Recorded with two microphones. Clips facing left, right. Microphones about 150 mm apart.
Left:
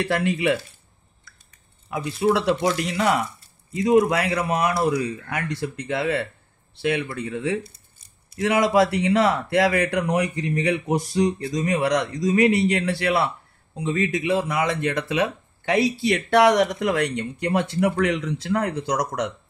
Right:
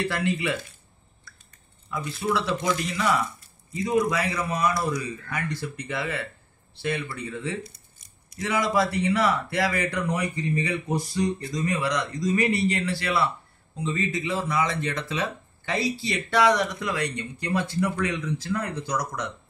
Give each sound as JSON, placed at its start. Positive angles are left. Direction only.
{"t": 0.1, "sound": "speech", "side_deg": 60}
{"t": 1.9, "sound": "speech", "side_deg": 65}